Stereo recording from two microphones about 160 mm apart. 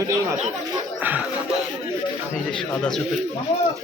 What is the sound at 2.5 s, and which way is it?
Speech, 5° left (ahead or behind).